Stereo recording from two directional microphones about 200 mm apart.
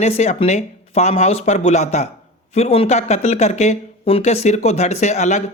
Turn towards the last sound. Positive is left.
turn(degrees=35)  # may be behind; listen again after turning